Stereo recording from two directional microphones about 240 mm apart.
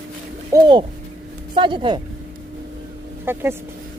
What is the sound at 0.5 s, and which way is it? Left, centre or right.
Speech, centre.